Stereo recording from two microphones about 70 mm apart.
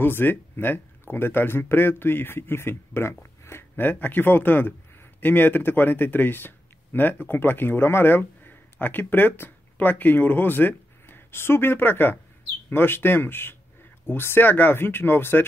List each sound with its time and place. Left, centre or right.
0.0 s speech: left